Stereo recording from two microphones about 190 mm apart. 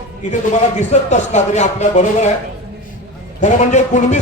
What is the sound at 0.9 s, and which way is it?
Speech, 40° left (ahead or behind).